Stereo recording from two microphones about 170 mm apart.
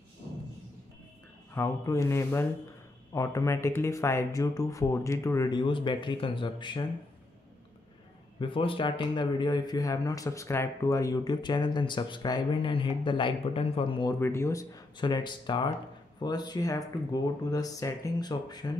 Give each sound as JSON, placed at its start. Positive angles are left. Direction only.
{"t": 1.5, "sound": "speech", "side_deg": 15}
{"t": 8.4, "sound": "speech", "side_deg": 30}
{"t": 14.2, "sound": "speech", "side_deg": 15}